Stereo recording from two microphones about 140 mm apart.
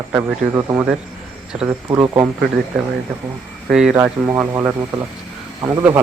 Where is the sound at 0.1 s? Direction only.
20° right (ahead or behind).